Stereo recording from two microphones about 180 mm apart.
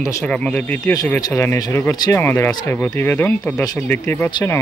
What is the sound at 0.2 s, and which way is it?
Speech, 5° left (ahead or behind).